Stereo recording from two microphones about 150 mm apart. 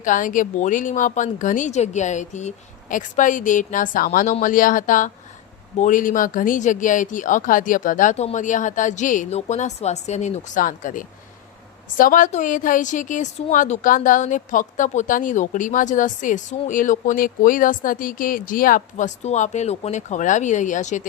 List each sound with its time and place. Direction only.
0.0 s a woman's voice: 60° left (ahead or behind)